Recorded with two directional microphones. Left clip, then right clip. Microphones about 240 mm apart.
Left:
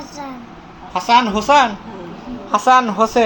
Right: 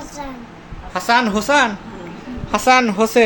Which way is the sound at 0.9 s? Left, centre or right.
Centre.